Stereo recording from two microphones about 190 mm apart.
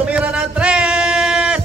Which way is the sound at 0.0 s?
5° right (ahead or behind).